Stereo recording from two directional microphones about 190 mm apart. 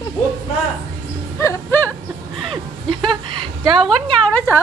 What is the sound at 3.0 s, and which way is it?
Speech, 25° right (ahead or behind).